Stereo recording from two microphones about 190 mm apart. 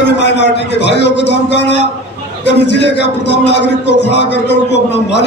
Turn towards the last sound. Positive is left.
turn(degrees=65)  # may be behind; listen again after turning